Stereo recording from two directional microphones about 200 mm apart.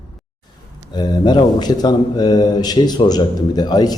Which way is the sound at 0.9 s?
20° left (ahead or behind).